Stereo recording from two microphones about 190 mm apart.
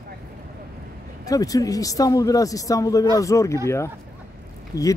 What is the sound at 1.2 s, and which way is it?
Speech, 20° left (ahead or behind).